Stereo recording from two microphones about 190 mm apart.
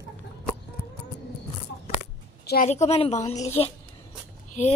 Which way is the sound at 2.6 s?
35° left (ahead or behind).